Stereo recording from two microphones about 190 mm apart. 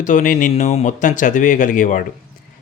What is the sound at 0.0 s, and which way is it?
A man's voice, 45° left (ahead or behind).